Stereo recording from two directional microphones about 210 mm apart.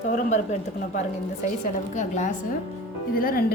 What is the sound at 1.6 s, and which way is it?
A woman's voice, 35° left (ahead or behind).